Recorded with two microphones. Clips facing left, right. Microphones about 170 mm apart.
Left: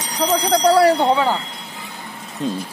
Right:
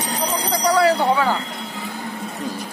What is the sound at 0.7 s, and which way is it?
Speech, 30° left (ahead or behind).